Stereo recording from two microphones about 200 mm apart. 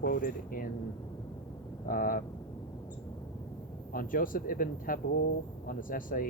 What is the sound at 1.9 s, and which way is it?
Speech, 45° left (ahead or behind).